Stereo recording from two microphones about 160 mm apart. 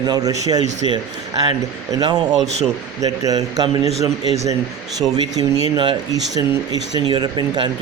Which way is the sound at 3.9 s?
40° right (ahead or behind).